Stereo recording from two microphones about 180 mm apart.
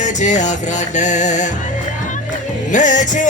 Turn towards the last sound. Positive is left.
turn(degrees=45)  # may be behind; listen again after turning